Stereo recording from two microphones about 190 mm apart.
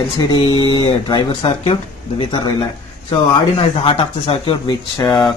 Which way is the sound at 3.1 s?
30° left (ahead or behind).